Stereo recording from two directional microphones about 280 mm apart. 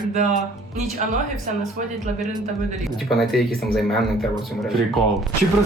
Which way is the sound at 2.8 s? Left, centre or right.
Centre.